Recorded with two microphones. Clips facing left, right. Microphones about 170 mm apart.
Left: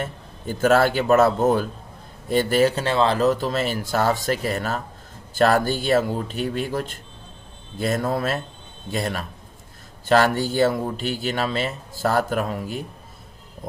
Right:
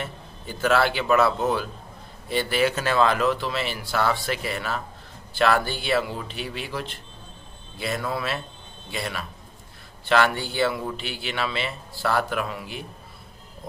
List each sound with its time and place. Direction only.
0.0 s speech: 45° left (ahead or behind)
2.7 s speech: 30° left (ahead or behind)